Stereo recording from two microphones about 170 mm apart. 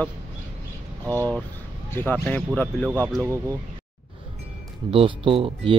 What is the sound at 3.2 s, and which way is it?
Speech, 15° right (ahead or behind).